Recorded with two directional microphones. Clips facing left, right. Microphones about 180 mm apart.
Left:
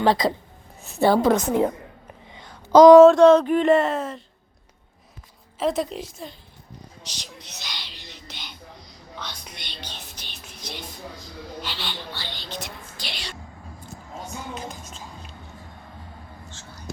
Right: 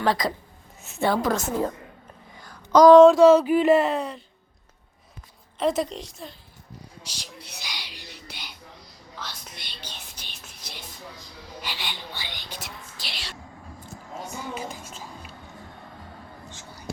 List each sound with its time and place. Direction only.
0.0 s a woman's voice: 25° left (ahead or behind)
1.3 s a woman's voice: 20° left (ahead or behind)
2.3 s a sound: 20° left (ahead or behind)
2.9 s speech: centre (ahead or behind)
5.5 s speech: centre (ahead or behind)
7.2 s a sound: 10° right (ahead or behind)
9.1 s whispering: 5° right (ahead or behind)
9.8 s music: 10° right (ahead or behind)
11.6 s whispering: 15° right (ahead or behind)
14.5 s a sound: 10° right (ahead or behind)
16.5 s whispering: 15° right (ahead or behind)